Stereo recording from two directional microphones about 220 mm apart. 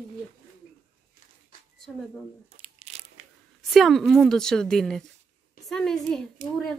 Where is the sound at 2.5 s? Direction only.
30° right (ahead or behind).